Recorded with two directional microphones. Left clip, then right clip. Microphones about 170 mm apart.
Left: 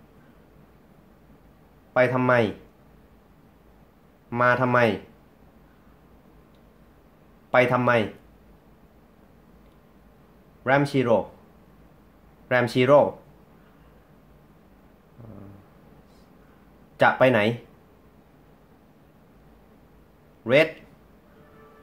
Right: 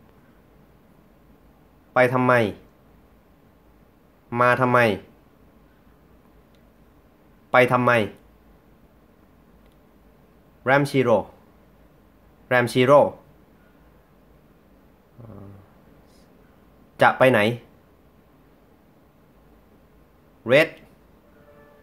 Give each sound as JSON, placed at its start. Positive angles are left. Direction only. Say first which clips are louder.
{"t": 2.0, "sound": "speech", "louder": "right 2 dB", "side_deg": -25}
{"t": 4.3, "sound": "speech", "louder": "right 2 dB", "side_deg": -25}
{"t": 7.5, "sound": "speech", "louder": "right 3 dB", "side_deg": -25}
{"t": 10.6, "sound": "speech", "louder": "right 2 dB", "side_deg": -25}
{"t": 12.4, "sound": "speech", "louder": "right 2 dB", "side_deg": -25}
{"t": 16.9, "sound": "speech", "louder": "right 2 dB", "side_deg": -25}
{"t": 20.4, "sound": "speech", "louder": "right 2 dB", "side_deg": -25}